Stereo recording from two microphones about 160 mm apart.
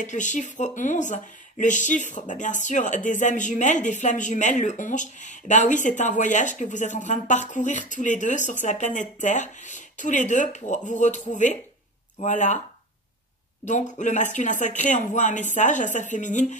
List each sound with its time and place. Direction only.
0.0 s speech: 50° left (ahead or behind)
13.7 s speech: 50° left (ahead or behind)